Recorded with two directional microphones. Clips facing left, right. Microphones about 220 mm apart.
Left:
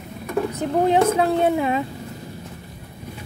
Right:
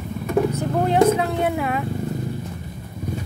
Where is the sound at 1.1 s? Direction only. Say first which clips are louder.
Left 3 dB; 30° left (ahead or behind).